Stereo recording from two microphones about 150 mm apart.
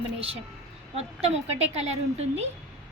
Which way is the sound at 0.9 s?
45° right (ahead or behind).